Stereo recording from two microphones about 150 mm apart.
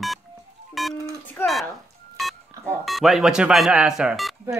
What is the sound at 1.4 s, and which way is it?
Music, 15° left (ahead or behind).